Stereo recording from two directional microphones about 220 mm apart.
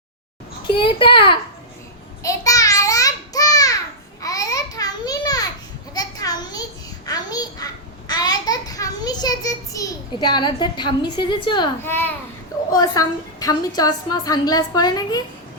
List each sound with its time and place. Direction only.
0.7 s a child's voice: 20° left (ahead or behind)
2.2 s babbling: 15° left (ahead or behind)
5.9 s a sound: 15° left (ahead or behind)
11.8 s a woman's voice: 10° left (ahead or behind)